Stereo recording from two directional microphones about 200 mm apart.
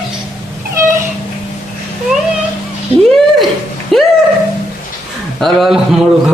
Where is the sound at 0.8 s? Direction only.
15° right (ahead or behind).